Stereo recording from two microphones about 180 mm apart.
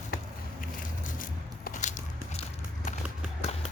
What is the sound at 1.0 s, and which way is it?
Biting, 50° left (ahead or behind).